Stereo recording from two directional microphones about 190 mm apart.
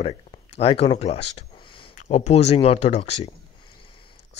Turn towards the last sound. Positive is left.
turn(degrees=25)  # may be behind; listen again after turning